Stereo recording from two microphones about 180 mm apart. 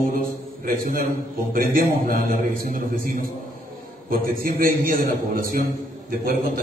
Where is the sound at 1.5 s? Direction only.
50° right (ahead or behind).